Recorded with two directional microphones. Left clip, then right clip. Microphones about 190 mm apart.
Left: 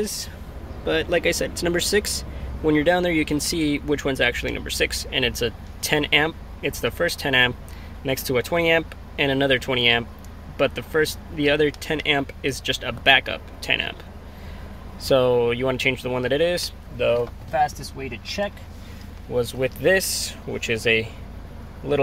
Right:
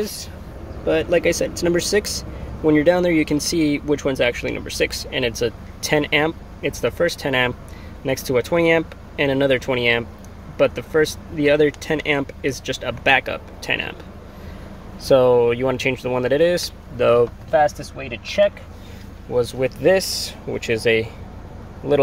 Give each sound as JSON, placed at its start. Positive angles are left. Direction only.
{"t": 0.0, "sound": "speech", "side_deg": 0}
{"t": 15.0, "sound": "speech", "side_deg": -10}
{"t": 16.9, "sound": "speech", "side_deg": -40}
{"t": 19.3, "sound": "speech", "side_deg": -15}